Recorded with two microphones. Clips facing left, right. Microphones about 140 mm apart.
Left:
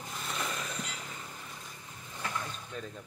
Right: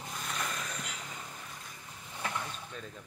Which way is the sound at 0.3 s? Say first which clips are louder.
Left 2 dB; 15° left (ahead or behind).